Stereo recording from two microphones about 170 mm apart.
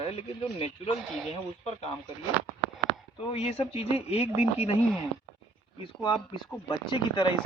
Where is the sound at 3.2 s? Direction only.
35° left (ahead or behind).